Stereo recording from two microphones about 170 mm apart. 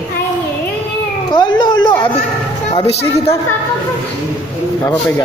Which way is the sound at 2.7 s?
35° left (ahead or behind).